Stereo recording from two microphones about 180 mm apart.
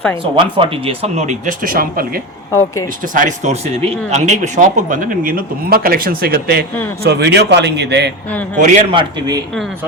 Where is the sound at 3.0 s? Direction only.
45° right (ahead or behind).